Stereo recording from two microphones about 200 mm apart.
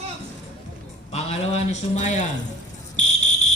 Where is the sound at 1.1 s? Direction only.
35° left (ahead or behind).